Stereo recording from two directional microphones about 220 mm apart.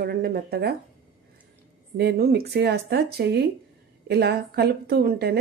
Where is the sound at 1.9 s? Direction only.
45° right (ahead or behind).